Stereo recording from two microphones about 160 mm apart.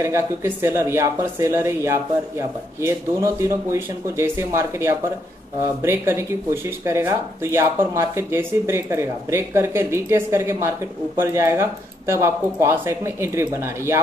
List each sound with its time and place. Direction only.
0.0 s speech: 15° right (ahead or behind)